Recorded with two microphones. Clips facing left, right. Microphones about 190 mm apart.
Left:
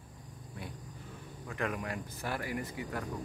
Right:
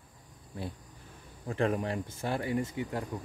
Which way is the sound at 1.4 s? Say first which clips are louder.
Right 7 dB; 30° right (ahead or behind).